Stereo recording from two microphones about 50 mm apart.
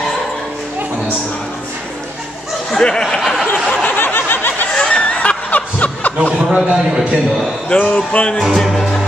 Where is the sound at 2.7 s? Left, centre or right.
Centre.